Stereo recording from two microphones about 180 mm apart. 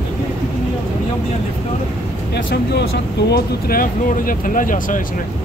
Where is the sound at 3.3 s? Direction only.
55° left (ahead or behind).